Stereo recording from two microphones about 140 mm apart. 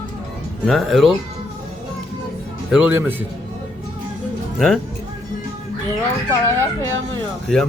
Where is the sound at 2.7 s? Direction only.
5° right (ahead or behind).